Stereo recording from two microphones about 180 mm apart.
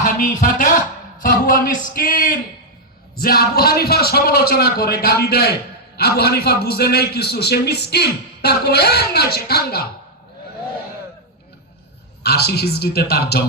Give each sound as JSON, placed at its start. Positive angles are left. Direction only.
{"t": 0.0, "sound": "a sound", "side_deg": 50}
{"t": 1.2, "sound": "a man's voice", "side_deg": 50}
{"t": 12.2, "sound": "a man's voice", "side_deg": 60}